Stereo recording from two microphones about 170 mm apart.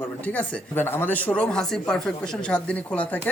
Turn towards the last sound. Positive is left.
turn(degrees=10)  # may be behind; listen again after turning